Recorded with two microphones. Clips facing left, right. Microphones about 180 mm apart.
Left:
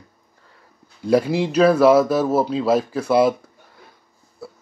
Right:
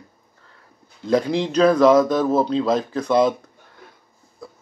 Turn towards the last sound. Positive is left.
turn(degrees=10)  # may be behind; listen again after turning